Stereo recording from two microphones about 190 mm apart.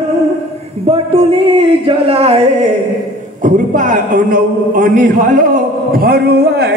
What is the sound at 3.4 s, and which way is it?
A man's voice, 45° right (ahead or behind).